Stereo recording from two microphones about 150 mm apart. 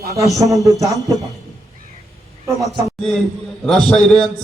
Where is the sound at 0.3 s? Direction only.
20° right (ahead or behind).